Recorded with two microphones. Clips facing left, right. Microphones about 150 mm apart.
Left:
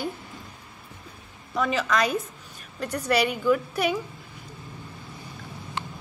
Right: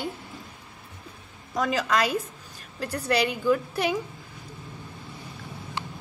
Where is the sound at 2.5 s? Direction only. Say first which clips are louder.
Left 1 dB; 30° right (ahead or behind).